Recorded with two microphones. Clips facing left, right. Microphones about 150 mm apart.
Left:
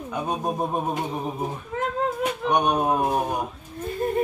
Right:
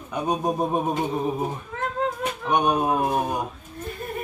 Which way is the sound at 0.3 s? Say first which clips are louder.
Right 3 dB; centre (ahead or behind).